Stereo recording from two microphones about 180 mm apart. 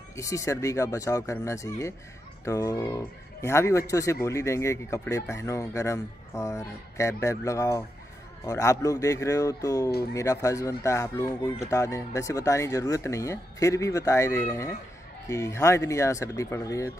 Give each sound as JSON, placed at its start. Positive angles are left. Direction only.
{"t": 0.1, "sound": "speech", "side_deg": 15}